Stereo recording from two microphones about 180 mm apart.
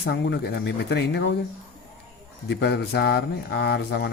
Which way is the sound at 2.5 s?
65° left (ahead or behind).